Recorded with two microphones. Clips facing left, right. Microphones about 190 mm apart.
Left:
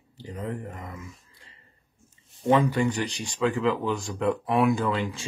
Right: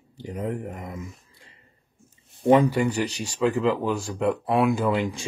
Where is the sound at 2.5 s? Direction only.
5° right (ahead or behind).